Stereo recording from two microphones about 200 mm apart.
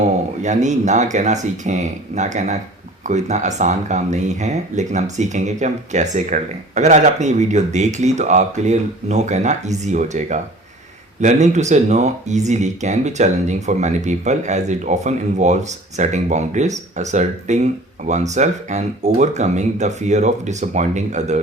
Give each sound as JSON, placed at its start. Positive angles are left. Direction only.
{"t": 0.4, "sound": "speech", "side_deg": -35}